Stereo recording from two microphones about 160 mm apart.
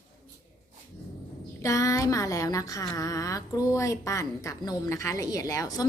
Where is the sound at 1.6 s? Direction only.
20° left (ahead or behind).